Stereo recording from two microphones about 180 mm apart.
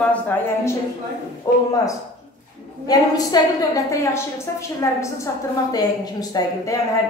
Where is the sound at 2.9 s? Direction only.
20° left (ahead or behind).